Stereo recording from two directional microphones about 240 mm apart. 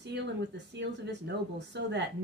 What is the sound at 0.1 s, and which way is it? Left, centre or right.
Speech, right.